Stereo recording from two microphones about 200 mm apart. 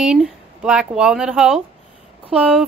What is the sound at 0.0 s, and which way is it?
A woman's voice, 5° right (ahead or behind).